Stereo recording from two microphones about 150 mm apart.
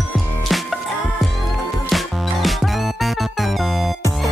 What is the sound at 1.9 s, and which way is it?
Music, centre (ahead or behind).